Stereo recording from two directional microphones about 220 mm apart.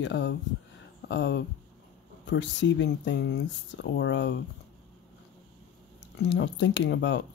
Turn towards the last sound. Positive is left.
turn(degrees=55)  # may be behind; listen again after turning